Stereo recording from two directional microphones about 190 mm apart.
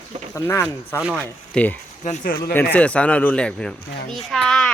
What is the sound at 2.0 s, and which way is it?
Speech, 40° left (ahead or behind).